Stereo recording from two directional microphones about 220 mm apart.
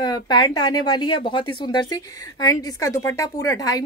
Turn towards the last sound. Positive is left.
turn(degrees=15)  # may be behind; listen again after turning